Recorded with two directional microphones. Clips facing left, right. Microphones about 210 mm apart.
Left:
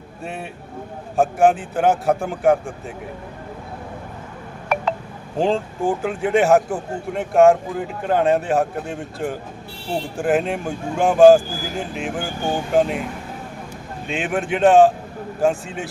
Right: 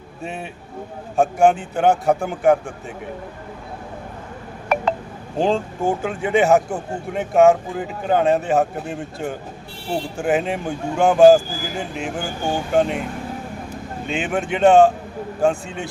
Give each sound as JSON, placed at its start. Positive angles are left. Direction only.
{"t": 0.2, "sound": "speech", "side_deg": 0}
{"t": 5.4, "sound": "speech", "side_deg": 0}
{"t": 14.1, "sound": "speech", "side_deg": 0}